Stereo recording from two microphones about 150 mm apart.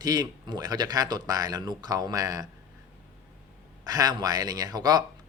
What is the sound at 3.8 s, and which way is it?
A man's voice, 25° right (ahead or behind).